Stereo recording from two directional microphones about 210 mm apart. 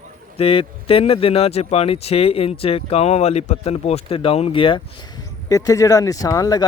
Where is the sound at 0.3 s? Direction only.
25° left (ahead or behind).